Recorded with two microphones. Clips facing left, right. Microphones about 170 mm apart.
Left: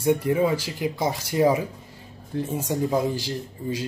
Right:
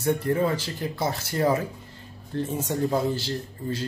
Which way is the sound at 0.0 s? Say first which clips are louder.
Left 3 dB; 10° left (ahead or behind).